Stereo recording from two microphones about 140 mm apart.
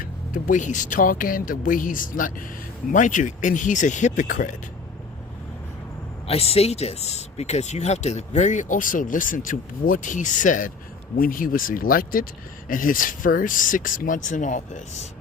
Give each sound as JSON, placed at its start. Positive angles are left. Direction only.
{"t": 0.0, "sound": "speech", "side_deg": 70}
{"t": 6.2, "sound": "speech", "side_deg": 45}
{"t": 11.2, "sound": "speech", "side_deg": 85}